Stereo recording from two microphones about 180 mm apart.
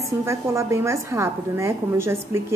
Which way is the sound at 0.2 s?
15° right (ahead or behind).